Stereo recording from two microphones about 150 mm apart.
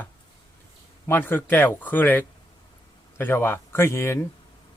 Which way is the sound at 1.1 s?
15° left (ahead or behind).